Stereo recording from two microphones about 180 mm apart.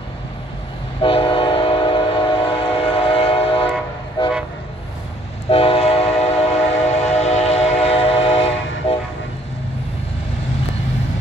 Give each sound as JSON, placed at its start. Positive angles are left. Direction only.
{"t": 1.0, "sound": "train", "side_deg": 30}
{"t": 4.2, "sound": "vehicle", "side_deg": 25}
{"t": 5.5, "sound": "train", "side_deg": 30}